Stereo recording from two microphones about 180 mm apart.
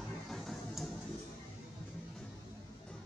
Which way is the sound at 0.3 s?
Centre (ahead or behind).